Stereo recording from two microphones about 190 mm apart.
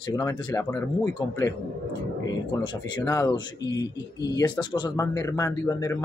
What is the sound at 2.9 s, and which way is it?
Speech, 20° left (ahead or behind).